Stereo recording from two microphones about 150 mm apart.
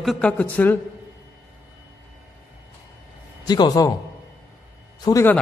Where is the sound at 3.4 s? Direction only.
25° left (ahead or behind).